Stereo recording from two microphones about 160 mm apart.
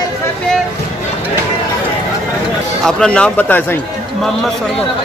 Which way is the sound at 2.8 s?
5° left (ahead or behind).